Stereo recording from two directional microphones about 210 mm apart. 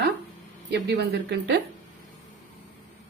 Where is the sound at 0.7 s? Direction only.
55° right (ahead or behind).